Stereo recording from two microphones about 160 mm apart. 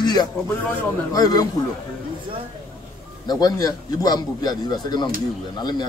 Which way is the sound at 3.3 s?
25° left (ahead or behind).